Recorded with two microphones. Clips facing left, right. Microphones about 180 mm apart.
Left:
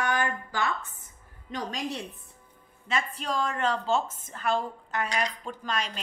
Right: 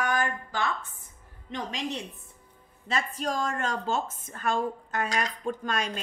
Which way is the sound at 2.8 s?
40° right (ahead or behind).